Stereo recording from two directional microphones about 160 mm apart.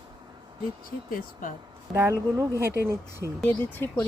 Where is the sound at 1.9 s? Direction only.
15° right (ahead or behind).